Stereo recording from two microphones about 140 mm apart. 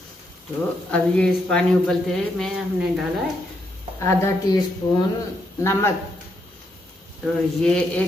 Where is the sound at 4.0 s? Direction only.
20° left (ahead or behind).